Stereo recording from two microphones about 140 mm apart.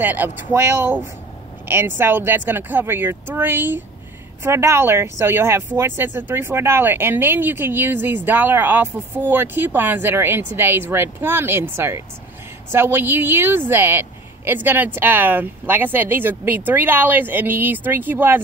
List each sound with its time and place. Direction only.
0.0 s speech: 15° right (ahead or behind)